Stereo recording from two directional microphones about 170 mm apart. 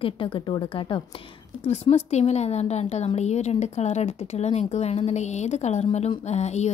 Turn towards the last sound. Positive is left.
turn(degrees=40)  # may be behind; listen again after turning